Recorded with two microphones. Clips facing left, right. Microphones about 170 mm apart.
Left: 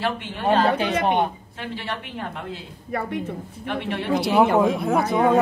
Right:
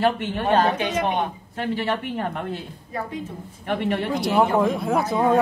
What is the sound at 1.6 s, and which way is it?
A woman's voice, 45° right (ahead or behind).